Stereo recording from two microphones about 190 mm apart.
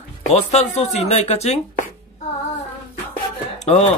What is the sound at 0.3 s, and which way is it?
Speech, 35° left (ahead or behind).